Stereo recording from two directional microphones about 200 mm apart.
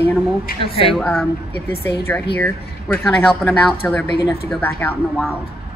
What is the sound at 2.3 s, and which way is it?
Speech, 10° left (ahead or behind).